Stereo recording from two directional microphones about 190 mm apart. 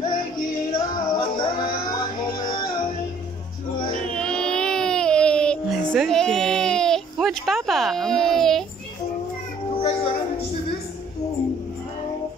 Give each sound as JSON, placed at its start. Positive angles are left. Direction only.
{"t": 0.7, "sound": "music", "side_deg": 25}
{"t": 4.0, "sound": "a sound", "side_deg": 5}
{"t": 9.8, "sound": "music", "side_deg": 30}